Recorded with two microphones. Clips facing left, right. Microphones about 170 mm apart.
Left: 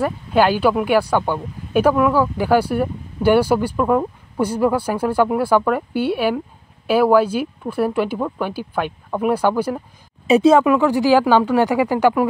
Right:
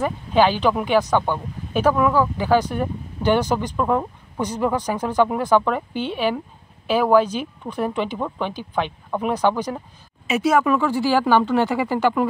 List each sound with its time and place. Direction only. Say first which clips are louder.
0.0 s speech: left 1 dB; 10° left (ahead or behind)
10.2 s speech: left 7 dB; 30° left (ahead or behind)
10.6 s speech: left 4 dB; 15° left (ahead or behind)